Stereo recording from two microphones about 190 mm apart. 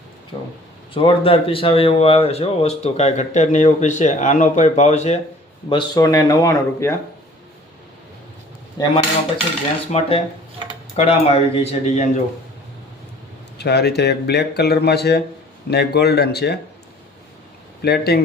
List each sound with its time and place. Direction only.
1.0 s speech: 30° left (ahead or behind)
5.6 s speech: 25° left (ahead or behind)
8.8 s cutlery: 20° left (ahead or behind)
9.9 s speech: 30° left (ahead or behind)
13.6 s speech: 60° left (ahead or behind)
17.8 s speech: 55° left (ahead or behind)